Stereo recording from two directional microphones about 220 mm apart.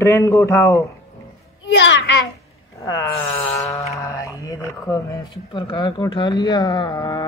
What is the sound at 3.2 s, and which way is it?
Speech, 5° left (ahead or behind).